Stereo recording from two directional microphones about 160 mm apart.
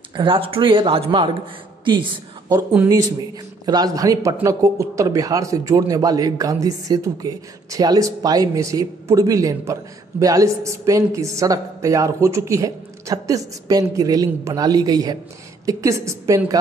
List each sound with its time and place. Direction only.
0.1 s speech: 30° right (ahead or behind)
3.6 s speech: 25° right (ahead or behind)